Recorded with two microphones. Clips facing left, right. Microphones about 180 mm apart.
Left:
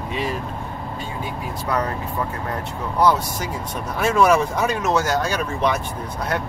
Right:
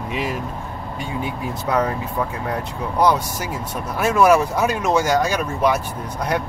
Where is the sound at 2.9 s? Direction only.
15° right (ahead or behind).